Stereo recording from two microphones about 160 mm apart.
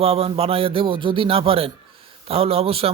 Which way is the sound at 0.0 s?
40° right (ahead or behind).